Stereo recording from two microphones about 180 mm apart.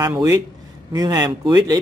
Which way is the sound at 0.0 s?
15° right (ahead or behind).